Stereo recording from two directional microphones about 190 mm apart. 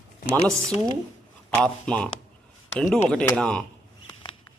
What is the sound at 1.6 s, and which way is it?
Speech, 5° left (ahead or behind).